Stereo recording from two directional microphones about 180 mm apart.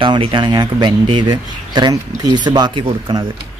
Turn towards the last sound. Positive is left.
turn(degrees=-25)  # may be behind; listen again after turning